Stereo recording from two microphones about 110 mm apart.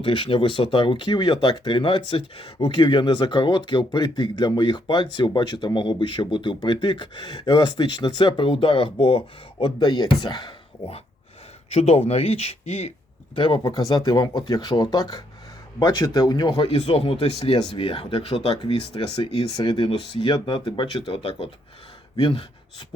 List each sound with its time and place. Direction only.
0.0 s speech: 50° left (ahead or behind)
11.7 s speech: 70° left (ahead or behind)
13.3 s speech: 50° left (ahead or behind)
16.6 s speech: 65° left (ahead or behind)
19.6 s speech: 55° left (ahead or behind)
21.1 s speech: 55° left (ahead or behind)